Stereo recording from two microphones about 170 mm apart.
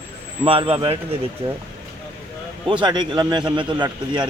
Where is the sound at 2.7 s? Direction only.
25° right (ahead or behind).